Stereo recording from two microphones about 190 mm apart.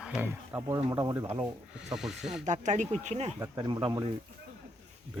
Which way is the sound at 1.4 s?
5° right (ahead or behind).